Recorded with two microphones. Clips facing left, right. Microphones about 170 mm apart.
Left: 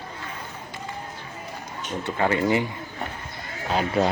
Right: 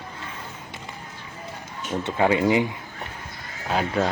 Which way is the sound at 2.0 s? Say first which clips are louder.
Right 2 dB; 15° right (ahead or behind).